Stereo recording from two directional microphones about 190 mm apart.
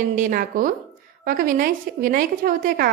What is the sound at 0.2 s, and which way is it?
A woman's voice, 45° right (ahead or behind).